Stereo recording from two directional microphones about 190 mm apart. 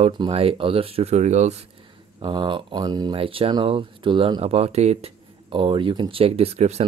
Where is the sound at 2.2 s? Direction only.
25° right (ahead or behind).